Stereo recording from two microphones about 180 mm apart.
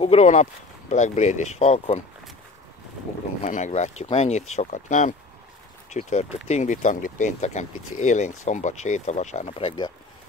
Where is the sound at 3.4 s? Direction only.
40° left (ahead or behind).